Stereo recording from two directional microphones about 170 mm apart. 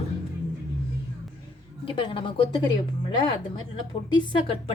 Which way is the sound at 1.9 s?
30° left (ahead or behind).